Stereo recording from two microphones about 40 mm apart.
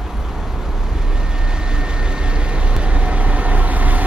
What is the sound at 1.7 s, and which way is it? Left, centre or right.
Vehicle, right.